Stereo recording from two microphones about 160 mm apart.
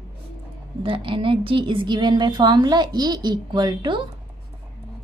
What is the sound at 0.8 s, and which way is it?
A woman's voice, 30° right (ahead or behind).